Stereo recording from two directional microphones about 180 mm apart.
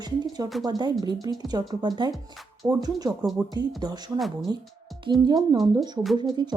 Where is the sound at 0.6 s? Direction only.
20° right (ahead or behind).